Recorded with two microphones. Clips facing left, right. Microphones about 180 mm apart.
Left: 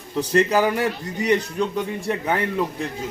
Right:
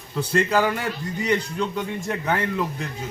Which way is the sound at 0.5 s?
15° left (ahead or behind).